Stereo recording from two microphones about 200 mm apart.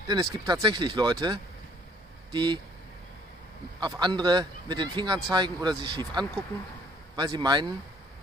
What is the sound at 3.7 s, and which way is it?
A man's voice, 20° right (ahead or behind).